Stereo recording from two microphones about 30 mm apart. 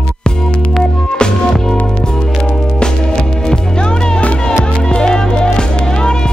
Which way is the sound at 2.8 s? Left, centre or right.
Left.